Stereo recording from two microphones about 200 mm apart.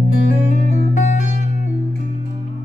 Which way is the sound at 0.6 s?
35° left (ahead or behind).